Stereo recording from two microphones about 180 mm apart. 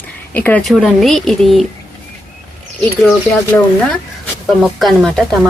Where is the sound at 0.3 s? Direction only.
10° left (ahead or behind).